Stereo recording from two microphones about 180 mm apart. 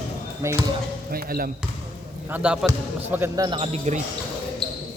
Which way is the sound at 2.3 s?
5° right (ahead or behind).